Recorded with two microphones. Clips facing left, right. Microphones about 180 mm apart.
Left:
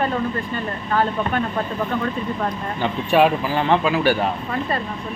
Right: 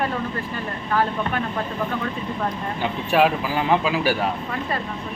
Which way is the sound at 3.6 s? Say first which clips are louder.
Left 2 dB; 5° right (ahead or behind).